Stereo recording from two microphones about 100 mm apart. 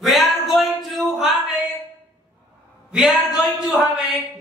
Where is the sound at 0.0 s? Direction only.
Centre (ahead or behind).